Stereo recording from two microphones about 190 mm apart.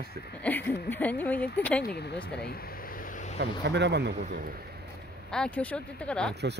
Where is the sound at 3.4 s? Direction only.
65° right (ahead or behind).